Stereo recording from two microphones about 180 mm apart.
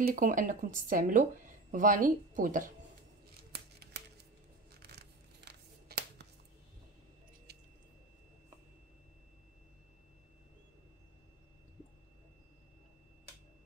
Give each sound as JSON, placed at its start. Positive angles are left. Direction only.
{"t": 0.0, "sound": "speech", "side_deg": -50}
{"t": 3.3, "sound": "scissors", "side_deg": -65}
{"t": 4.8, "sound": "a sound", "side_deg": -65}
{"t": 7.5, "sound": "squish", "side_deg": -65}